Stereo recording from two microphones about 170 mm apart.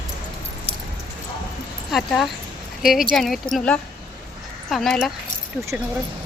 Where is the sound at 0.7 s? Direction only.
35° right (ahead or behind).